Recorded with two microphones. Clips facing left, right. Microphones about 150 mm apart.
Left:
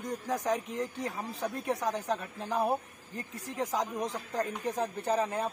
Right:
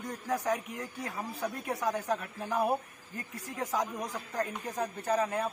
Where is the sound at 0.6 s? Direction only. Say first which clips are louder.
Left 5 dB; 25° left (ahead or behind).